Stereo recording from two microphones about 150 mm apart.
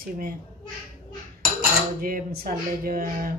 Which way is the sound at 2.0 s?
70° right (ahead or behind).